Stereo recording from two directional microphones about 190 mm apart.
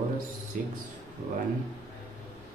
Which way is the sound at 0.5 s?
45° right (ahead or behind).